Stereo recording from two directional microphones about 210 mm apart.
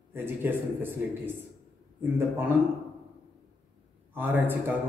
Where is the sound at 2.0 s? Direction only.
10° right (ahead or behind).